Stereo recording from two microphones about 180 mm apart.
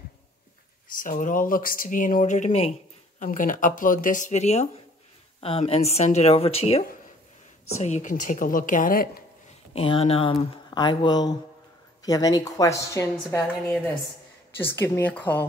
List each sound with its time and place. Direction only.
0.9 s speech: 45° left (ahead or behind)
3.2 s speech: 50° left (ahead or behind)
9.8 s speech: 30° left (ahead or behind); by 13.4 s 15° left (ahead or behind)
14.6 s a woman's voice: 10° left (ahead or behind)